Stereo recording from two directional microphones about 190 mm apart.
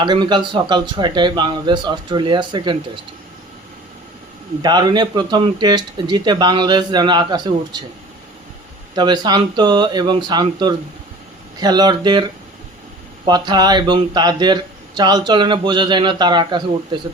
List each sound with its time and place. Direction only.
0.0 s speech: 25° right (ahead or behind)
4.6 s speech: 20° right (ahead or behind)
9.0 s speech: 20° right (ahead or behind)